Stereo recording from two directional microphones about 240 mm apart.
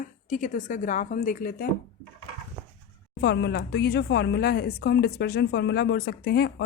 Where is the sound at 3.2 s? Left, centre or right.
Left.